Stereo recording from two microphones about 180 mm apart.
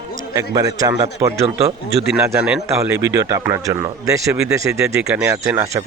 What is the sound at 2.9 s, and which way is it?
A man's voice, 20° right (ahead or behind).